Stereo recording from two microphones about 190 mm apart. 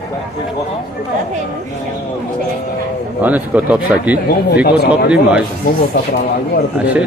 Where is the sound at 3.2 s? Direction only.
10° right (ahead or behind).